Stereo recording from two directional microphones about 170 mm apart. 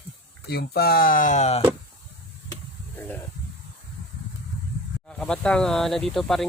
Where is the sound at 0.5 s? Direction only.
65° left (ahead or behind); by 1.6 s 40° left (ahead or behind).